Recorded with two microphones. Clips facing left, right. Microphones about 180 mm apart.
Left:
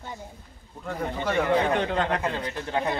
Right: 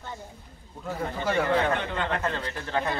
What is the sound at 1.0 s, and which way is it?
Speech, 15° left (ahead or behind).